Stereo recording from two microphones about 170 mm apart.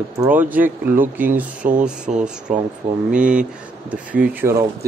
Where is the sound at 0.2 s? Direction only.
10° right (ahead or behind).